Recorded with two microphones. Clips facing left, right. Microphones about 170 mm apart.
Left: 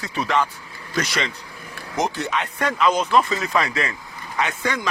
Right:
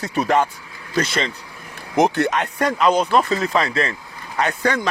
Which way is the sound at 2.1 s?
55° right (ahead or behind).